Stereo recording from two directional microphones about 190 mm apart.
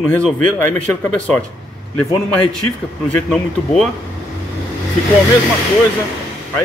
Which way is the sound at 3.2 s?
Centre (ahead or behind).